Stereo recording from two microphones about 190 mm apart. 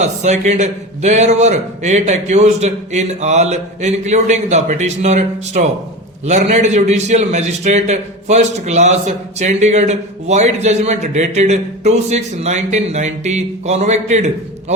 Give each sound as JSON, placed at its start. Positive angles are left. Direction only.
{"t": 0.0, "sound": "a man's voice", "side_deg": -35}